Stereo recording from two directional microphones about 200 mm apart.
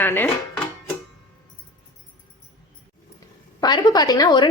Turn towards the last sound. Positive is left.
turn(degrees=20)  # may be behind; listen again after turning